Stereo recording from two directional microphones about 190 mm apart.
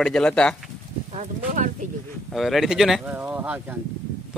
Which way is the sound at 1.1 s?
40° right (ahead or behind).